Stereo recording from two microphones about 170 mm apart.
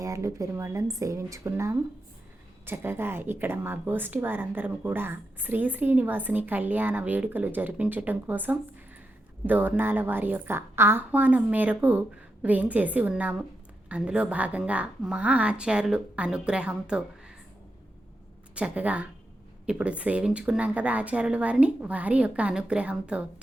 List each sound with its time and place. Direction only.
0.0 s speech: 20° right (ahead or behind)
18.5 s speech: 5° right (ahead or behind)